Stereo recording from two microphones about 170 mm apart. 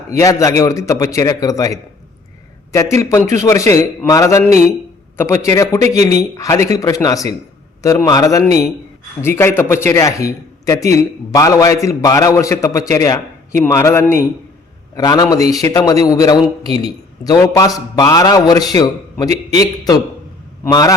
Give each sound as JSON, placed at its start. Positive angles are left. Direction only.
{"t": 0.1, "sound": "a man's voice", "side_deg": 20}